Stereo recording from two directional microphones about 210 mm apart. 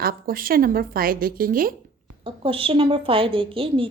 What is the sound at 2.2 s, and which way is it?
A woman's voice, 25° right (ahead or behind).